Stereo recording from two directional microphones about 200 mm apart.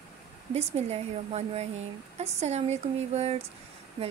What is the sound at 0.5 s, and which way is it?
A woman's voice, 30° right (ahead or behind).